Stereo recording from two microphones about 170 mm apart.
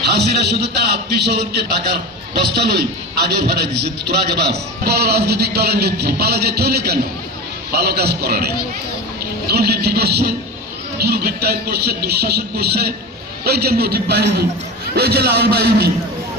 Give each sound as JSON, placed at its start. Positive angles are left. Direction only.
{"t": 0.1, "sound": "a man's voice", "side_deg": -75}
{"t": 9.5, "sound": "a man's voice", "side_deg": -70}